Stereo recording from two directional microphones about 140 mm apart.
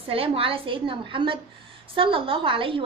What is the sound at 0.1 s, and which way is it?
A woman's voice, 40° right (ahead or behind).